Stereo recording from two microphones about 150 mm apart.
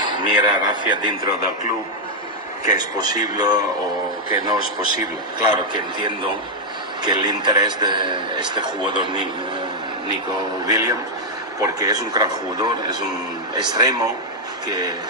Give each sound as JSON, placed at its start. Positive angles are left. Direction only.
{"t": 0.0, "sound": "a man's voice", "side_deg": -30}
{"t": 2.6, "sound": "a man's voice", "side_deg": -30}
{"t": 10.7, "sound": "a man's voice", "side_deg": -25}